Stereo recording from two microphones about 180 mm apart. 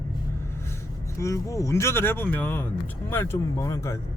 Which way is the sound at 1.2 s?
15° left (ahead or behind).